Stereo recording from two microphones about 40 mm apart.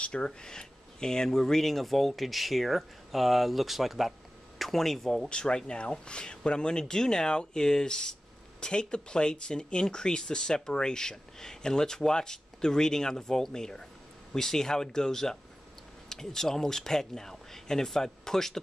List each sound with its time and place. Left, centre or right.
0.0 s speech: left; by 4.1 s centre
4.6 s speech: centre
5.3 s speech: centre